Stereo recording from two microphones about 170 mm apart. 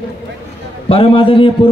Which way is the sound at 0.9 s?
30° left (ahead or behind).